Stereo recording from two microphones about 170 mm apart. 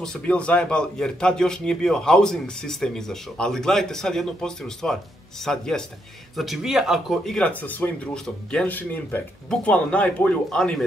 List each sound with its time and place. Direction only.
0.0 s a man's voice: 5° left (ahead or behind)